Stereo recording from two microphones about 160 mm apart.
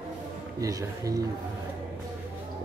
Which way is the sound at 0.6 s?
20° right (ahead or behind).